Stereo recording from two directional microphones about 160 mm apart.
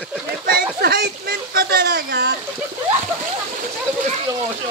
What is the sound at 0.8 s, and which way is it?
Speech, 80° right.